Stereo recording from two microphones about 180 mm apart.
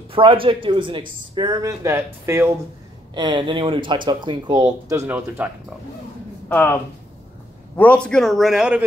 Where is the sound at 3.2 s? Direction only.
25° right (ahead or behind).